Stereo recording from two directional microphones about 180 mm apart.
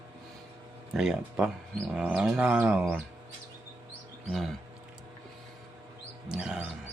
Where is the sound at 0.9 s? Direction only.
5° right (ahead or behind).